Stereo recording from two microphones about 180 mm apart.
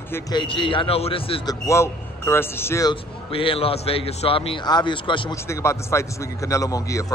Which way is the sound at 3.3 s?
30° left (ahead or behind).